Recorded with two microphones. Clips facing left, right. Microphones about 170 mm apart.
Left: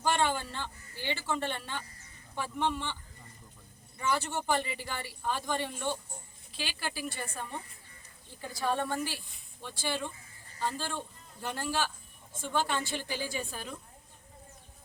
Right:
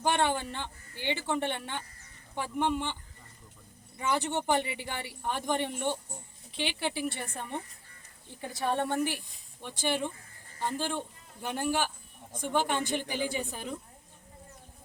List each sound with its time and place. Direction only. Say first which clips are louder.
0.3 s a man's voice: right 2 dB; 20° right (ahead or behind)